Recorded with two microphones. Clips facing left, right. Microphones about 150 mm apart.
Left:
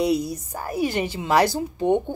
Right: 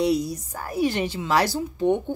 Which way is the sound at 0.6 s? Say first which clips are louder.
Even; 15° left (ahead or behind).